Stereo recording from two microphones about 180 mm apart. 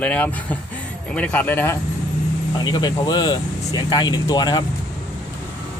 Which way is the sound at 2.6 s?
20° left (ahead or behind).